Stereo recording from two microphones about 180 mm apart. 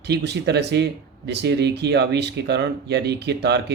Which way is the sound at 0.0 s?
70° right (ahead or behind).